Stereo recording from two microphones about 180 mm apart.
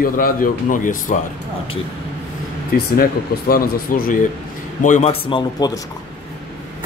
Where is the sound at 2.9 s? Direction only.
55° left (ahead or behind); by 5.7 s 25° left (ahead or behind).